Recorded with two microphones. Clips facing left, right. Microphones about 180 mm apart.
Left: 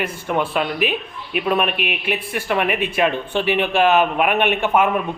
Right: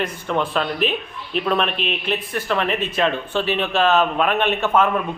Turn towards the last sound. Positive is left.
turn(degrees=10)  # may be behind; listen again after turning